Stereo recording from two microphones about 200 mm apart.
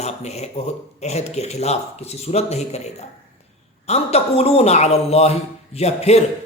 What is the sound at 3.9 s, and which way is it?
Speech, 30° left (ahead or behind).